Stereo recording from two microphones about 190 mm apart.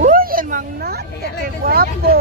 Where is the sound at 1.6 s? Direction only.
50° right (ahead or behind).